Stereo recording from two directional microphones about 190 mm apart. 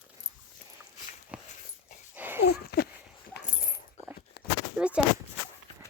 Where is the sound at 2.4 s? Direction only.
55° left (ahead or behind).